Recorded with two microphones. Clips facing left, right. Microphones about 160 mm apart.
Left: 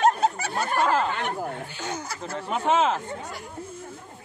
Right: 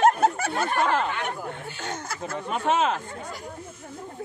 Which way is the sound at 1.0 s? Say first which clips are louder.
Left 2 dB; 35° left (ahead or behind).